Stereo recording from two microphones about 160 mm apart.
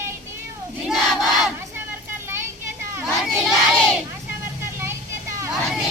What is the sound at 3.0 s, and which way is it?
Child singing, centre (ahead or behind).